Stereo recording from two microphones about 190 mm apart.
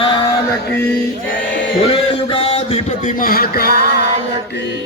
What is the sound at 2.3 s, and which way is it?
Music, 30° left (ahead or behind).